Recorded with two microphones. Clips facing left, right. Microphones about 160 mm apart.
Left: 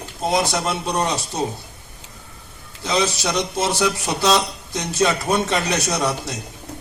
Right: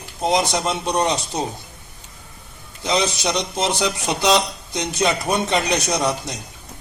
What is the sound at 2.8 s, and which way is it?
A man's voice, 20° right (ahead or behind).